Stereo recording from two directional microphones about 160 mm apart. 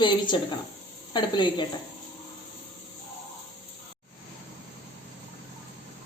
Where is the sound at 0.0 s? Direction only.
30° left (ahead or behind).